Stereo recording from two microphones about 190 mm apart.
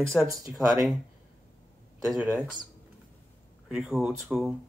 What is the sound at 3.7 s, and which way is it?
Speech, 5° right (ahead or behind).